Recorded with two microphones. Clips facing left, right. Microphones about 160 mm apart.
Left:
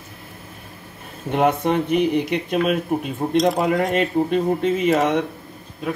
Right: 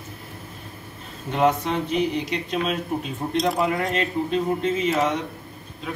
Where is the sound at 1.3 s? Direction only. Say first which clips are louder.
Left 3 dB; 55° left (ahead or behind).